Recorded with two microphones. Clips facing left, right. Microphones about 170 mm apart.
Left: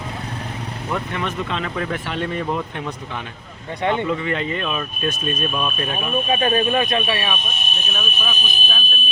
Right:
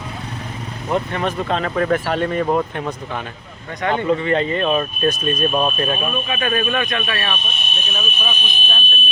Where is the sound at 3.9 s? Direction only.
35° right (ahead or behind).